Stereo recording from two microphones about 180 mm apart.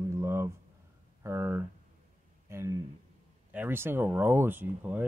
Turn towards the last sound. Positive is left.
turn(degrees=-10)  # may be behind; listen again after turning